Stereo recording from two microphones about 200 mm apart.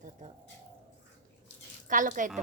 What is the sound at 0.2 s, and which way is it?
Bird, 35° right (ahead or behind).